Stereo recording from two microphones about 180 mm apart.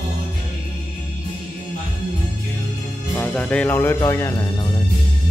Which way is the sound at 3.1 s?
5° left (ahead or behind).